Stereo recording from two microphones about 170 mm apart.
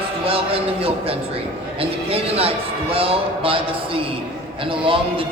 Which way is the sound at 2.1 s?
35° right (ahead or behind).